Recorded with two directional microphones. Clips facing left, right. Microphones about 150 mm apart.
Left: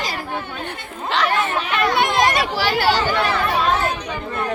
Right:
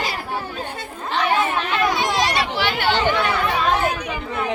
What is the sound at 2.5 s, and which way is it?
Speech, 40° left (ahead or behind).